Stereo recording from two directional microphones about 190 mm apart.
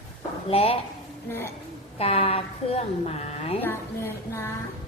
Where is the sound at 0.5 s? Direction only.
30° left (ahead or behind).